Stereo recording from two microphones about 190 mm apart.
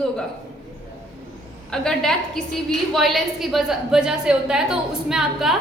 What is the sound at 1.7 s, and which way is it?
A woman's voice, 5° left (ahead or behind).